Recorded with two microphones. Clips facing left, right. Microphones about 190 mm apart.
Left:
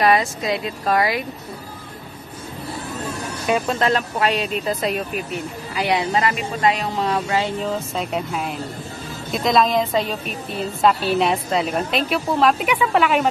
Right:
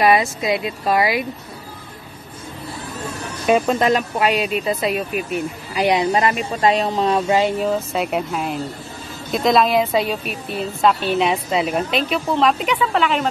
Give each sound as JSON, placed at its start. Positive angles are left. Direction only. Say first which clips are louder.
{"t": 0.0, "sound": "speech", "louder": "right 2 dB", "side_deg": -10}
{"t": 3.4, "sound": "a woman's voice", "louder": "right 4 dB", "side_deg": -20}